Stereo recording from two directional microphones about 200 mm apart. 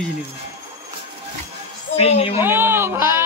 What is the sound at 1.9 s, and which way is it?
Speech, 30° left (ahead or behind).